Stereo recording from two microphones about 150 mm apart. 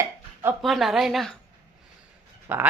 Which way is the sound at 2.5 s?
10° right (ahead or behind).